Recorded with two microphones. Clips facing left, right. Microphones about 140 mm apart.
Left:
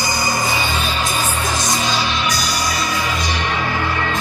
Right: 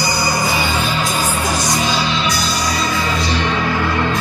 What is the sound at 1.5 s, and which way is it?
Music, 20° left (ahead or behind).